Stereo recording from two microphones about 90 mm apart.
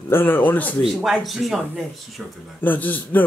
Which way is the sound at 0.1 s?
25° left (ahead or behind).